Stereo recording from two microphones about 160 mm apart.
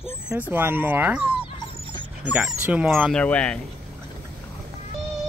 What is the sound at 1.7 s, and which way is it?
Dog, 35° right (ahead or behind).